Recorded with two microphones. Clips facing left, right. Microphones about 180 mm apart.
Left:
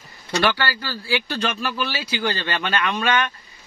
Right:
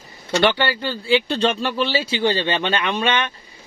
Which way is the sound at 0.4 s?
25° right (ahead or behind).